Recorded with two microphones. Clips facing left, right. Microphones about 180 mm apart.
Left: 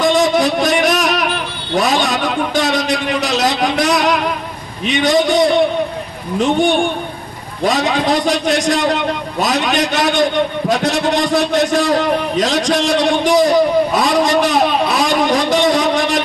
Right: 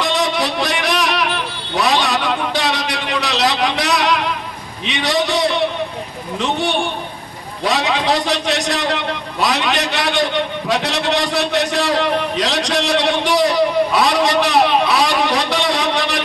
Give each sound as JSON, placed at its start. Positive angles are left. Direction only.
{"t": 0.0, "sound": "a sound", "side_deg": 45}
{"t": 4.8, "sound": "a man's voice", "side_deg": 45}
{"t": 7.6, "sound": "a man's voice", "side_deg": 45}